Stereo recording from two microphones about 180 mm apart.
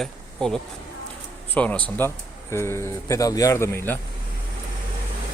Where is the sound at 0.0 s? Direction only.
5° left (ahead or behind).